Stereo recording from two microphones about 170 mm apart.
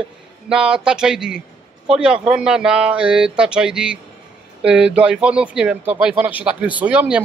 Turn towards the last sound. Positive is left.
turn(degrees=-5)  # may be behind; listen again after turning